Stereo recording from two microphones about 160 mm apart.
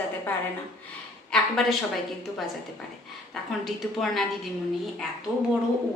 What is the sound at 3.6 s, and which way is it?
Speech, centre (ahead or behind).